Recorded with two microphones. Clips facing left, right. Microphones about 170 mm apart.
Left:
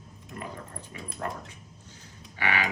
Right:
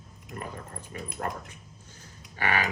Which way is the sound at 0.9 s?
45° right (ahead or behind).